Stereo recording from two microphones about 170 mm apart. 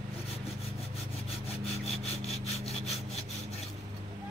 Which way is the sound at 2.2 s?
35° left (ahead or behind).